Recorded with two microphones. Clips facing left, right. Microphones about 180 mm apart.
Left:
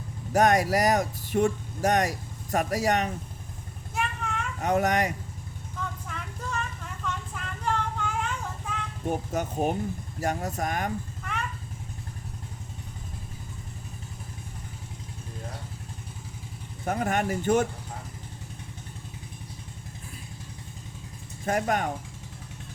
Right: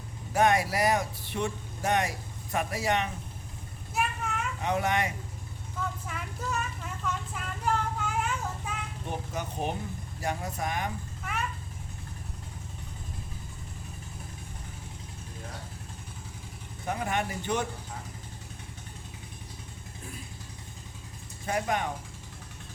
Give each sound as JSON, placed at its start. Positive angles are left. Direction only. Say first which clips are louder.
{"t": 0.3, "sound": "speech", "louder": "left 3 dB", "side_deg": 40}
{"t": 3.9, "sound": "vehicle", "louder": "even", "side_deg": -5}
{"t": 4.6, "sound": "speech", "louder": "left 4 dB", "side_deg": 45}
{"t": 6.1, "sound": "vehicle", "louder": "right 1 dB", "side_deg": -5}
{"t": 7.6, "sound": "child singing", "louder": "even", "side_deg": -5}
{"t": 9.0, "sound": "speech", "louder": "left 7 dB", "side_deg": 45}
{"t": 16.8, "sound": "speech", "louder": "left 4 dB", "side_deg": 45}
{"t": 21.4, "sound": "speech", "louder": "left 3 dB", "side_deg": 45}